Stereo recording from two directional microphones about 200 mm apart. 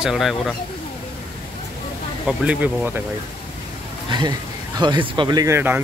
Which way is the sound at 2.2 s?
5° right (ahead or behind).